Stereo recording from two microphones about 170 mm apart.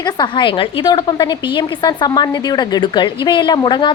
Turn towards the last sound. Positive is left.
turn(degrees=30)  # may be behind; listen again after turning